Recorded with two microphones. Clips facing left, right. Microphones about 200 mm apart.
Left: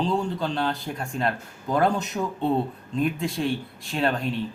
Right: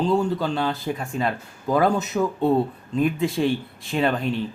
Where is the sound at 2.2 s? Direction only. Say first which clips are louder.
Right 5 dB; 90° right.